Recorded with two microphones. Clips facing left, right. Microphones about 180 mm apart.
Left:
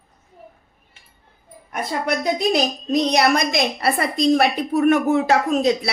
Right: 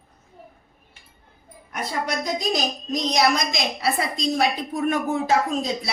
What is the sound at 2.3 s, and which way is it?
A woman's voice, 60° left (ahead or behind).